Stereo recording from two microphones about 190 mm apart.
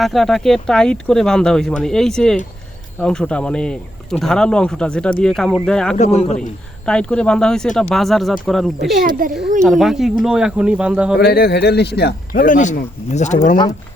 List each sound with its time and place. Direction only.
0.0 s speech: centre (ahead or behind)
6.0 s a man's voice: 35° left (ahead or behind)
6.8 s speech: 5° left (ahead or behind)
9.0 s a child's voice: 45° right (ahead or behind)
9.6 s speech: centre (ahead or behind)
11.2 s a man's voice: 55° left (ahead or behind)